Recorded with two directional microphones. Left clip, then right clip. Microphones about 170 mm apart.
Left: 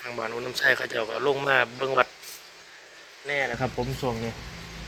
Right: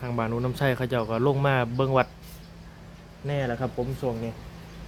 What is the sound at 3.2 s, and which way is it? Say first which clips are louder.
Speech: left 2 dB; 15° right (ahead or behind).